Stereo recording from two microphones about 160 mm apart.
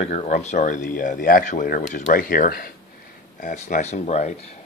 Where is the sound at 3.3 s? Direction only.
50° left (ahead or behind).